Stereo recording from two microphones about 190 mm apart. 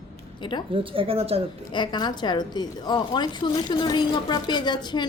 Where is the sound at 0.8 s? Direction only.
30° right (ahead or behind).